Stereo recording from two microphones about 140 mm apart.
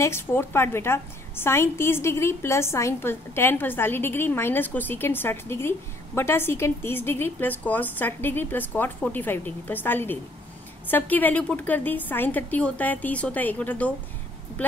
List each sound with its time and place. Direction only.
0.0 s a woman's voice: 15° left (ahead or behind)